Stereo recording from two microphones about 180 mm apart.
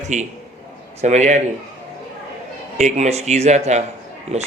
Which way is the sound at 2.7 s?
40° right (ahead or behind).